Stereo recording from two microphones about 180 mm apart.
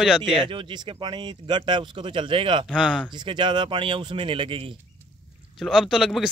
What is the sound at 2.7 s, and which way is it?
Speech, 5° left (ahead or behind).